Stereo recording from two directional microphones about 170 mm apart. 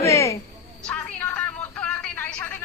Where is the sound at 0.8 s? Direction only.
10° left (ahead or behind).